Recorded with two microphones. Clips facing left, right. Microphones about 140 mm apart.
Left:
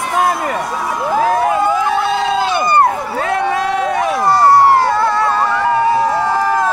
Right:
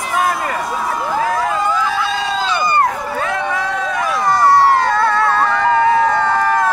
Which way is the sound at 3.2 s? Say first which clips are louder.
Left 5 dB; 65° left (ahead or behind).